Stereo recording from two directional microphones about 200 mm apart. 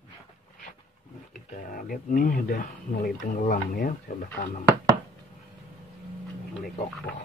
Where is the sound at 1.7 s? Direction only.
45° left (ahead or behind).